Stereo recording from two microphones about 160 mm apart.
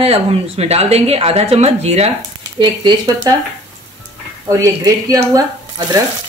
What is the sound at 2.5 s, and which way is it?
Frying, 30° right (ahead or behind).